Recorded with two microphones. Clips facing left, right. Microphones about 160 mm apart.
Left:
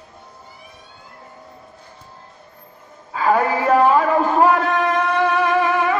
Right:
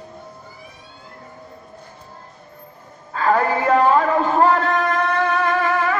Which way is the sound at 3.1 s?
10° left (ahead or behind).